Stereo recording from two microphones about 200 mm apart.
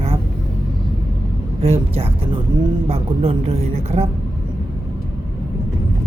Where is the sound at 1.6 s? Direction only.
30° right (ahead or behind).